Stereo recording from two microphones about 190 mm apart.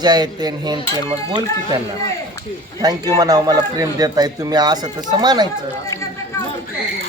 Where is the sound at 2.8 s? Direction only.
20° right (ahead or behind).